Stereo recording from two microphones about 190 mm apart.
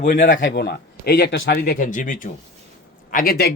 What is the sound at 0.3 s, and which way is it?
A man's voice, 70° left (ahead or behind).